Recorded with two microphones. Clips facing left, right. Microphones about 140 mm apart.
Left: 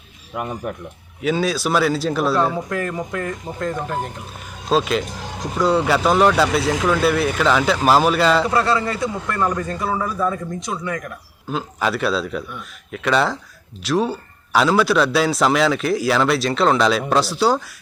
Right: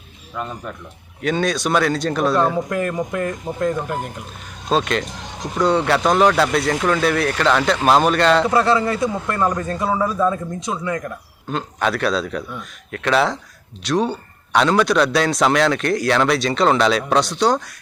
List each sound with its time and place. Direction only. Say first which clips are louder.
0.3 s speech: left 2 dB; 15° left (ahead or behind)
1.2 s a man's voice: even; 5° left (ahead or behind)
2.6 s speech: right 2 dB; 20° right (ahead or behind)
4.7 s a man's voice: left 1 dB; 5° left (ahead or behind)
8.4 s speech: right 2 dB; 20° right (ahead or behind)
11.4 s a man's voice: right 1 dB; 5° left (ahead or behind)